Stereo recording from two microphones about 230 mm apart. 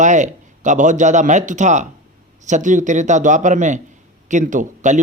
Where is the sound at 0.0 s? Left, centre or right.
Right.